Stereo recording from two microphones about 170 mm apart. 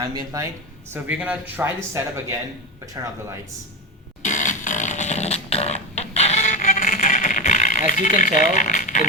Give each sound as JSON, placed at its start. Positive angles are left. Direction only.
{"t": 0.0, "sound": "speech", "side_deg": -25}
{"t": 0.9, "sound": "speech", "side_deg": -10}
{"t": 4.2, "sound": "music", "side_deg": 45}
{"t": 8.2, "sound": "speech", "side_deg": 45}